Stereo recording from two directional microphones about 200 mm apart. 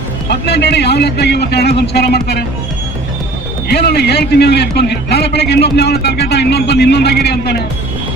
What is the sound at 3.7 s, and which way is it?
A man's voice, 55° left (ahead or behind).